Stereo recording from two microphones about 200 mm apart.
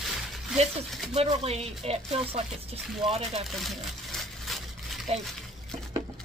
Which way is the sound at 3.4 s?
Centre (ahead or behind).